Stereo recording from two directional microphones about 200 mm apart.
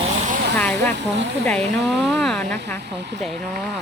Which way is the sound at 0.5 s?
5° left (ahead or behind).